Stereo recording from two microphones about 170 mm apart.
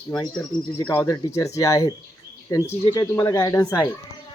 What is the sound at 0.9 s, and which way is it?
Speech, 15° left (ahead or behind).